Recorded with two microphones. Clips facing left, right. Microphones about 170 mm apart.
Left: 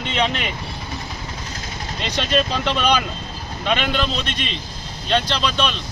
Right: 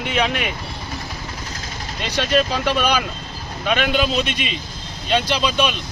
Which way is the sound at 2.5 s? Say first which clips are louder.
Even; 10° right (ahead or behind).